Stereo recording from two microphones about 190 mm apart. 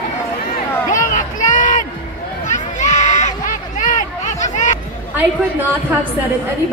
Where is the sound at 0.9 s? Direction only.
40° left (ahead or behind).